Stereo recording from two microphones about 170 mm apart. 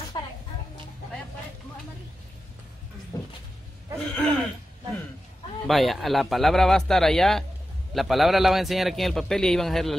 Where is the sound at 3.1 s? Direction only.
20° left (ahead or behind).